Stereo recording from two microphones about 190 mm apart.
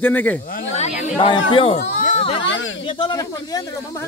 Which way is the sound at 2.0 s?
30° left (ahead or behind).